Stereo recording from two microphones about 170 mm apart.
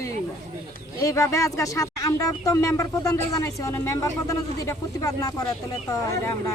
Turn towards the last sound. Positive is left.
turn(degrees=20)  # may be behind; listen again after turning